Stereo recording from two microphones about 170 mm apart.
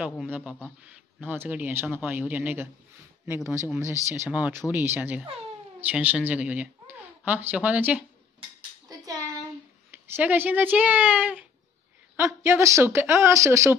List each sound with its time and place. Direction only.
0.0 s a man's voice: 5° right (ahead or behind)
8.8 s a sound: 20° right (ahead or behind)
9.8 s a woman's voice: 10° right (ahead or behind)